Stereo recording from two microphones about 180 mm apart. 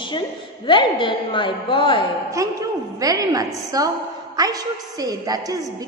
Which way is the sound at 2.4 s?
20° right (ahead or behind).